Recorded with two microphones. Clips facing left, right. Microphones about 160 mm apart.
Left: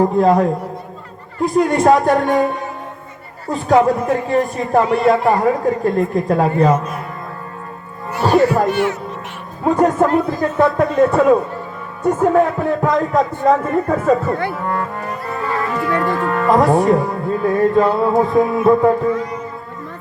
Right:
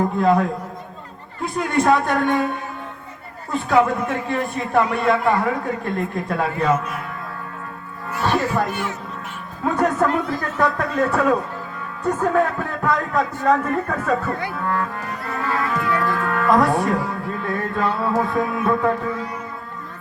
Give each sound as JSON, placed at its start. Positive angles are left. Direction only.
{"t": 0.0, "sound": "speech", "side_deg": 35}
{"t": 3.5, "sound": "speech", "side_deg": 35}
{"t": 8.2, "sound": "speech", "side_deg": 35}
{"t": 8.7, "sound": "speech", "side_deg": 70}
{"t": 9.6, "sound": "speech", "side_deg": 30}